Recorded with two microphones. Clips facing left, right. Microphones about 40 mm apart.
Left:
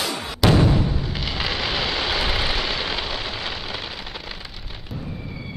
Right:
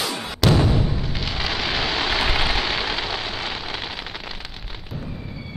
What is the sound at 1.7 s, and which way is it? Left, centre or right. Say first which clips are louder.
Vehicle: right 1 dB; centre.